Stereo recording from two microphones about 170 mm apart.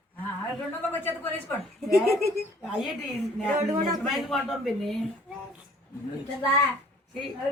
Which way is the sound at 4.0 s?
Centre (ahead or behind).